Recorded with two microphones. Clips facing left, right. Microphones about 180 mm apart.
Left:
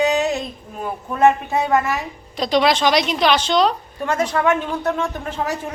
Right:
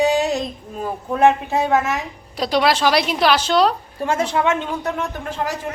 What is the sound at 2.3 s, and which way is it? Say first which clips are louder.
A woman's voice: left 1 dB; 5° right (ahead or behind).